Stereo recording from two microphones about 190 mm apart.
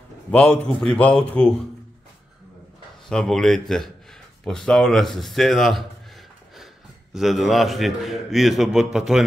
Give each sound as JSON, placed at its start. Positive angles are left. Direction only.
{"t": 0.3, "sound": "a man's voice", "side_deg": 5}
{"t": 3.1, "sound": "a man's voice", "side_deg": 5}
{"t": 7.2, "sound": "a man's voice", "side_deg": 0}